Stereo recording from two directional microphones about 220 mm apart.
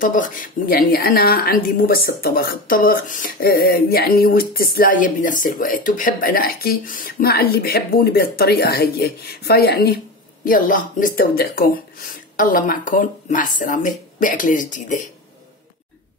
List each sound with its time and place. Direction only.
0.0 s speech: 40° left (ahead or behind)